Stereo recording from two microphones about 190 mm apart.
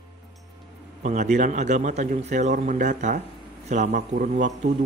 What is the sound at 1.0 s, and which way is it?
A man's voice, 35° right (ahead or behind).